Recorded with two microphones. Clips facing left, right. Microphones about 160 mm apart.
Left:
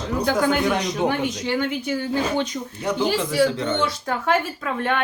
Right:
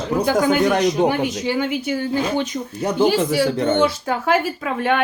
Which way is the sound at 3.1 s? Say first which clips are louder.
Right 2 dB; 50° right (ahead or behind).